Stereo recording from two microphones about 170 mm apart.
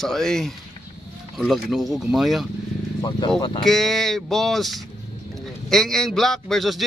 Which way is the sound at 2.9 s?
25° left (ahead or behind).